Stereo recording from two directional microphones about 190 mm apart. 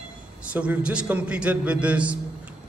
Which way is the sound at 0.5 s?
5° right (ahead or behind).